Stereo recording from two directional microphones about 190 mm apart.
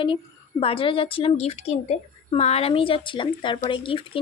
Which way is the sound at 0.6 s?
30° left (ahead or behind).